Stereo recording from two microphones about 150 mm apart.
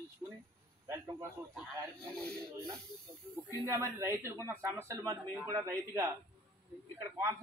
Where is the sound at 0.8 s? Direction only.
20° right (ahead or behind).